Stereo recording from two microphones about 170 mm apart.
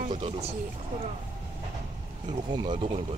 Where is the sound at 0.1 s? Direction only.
35° right (ahead or behind).